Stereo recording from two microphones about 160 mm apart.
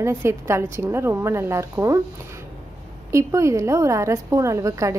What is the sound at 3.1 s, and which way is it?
A woman's voice, 20° right (ahead or behind).